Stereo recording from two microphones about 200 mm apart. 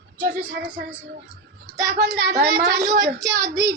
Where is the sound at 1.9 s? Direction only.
55° right (ahead or behind).